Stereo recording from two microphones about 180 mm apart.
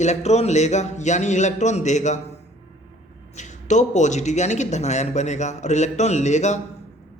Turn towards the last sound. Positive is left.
turn(degrees=40)  # may be behind; listen again after turning